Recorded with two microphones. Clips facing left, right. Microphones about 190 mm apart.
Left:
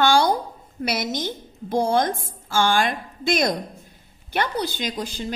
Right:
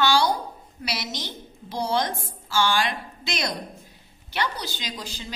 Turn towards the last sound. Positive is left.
turn(degrees=55)  # may be behind; listen again after turning